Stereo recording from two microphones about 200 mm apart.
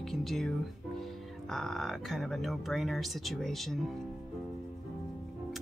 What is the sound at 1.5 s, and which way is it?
Speech, centre (ahead or behind).